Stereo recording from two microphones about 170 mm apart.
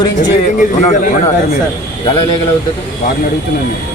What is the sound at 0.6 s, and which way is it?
Speech, 50° left (ahead or behind).